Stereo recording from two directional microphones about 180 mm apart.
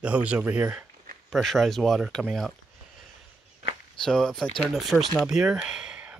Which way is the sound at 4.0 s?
5° left (ahead or behind).